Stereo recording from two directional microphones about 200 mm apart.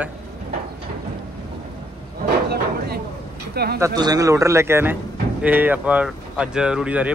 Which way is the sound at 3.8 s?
20° right (ahead or behind).